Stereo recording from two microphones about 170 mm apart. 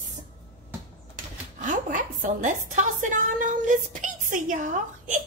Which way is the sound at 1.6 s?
50° right (ahead or behind).